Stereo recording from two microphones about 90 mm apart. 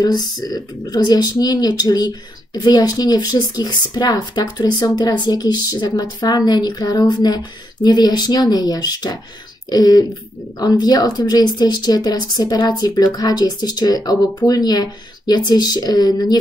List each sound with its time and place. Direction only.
0.0 s speech: 45° left (ahead or behind)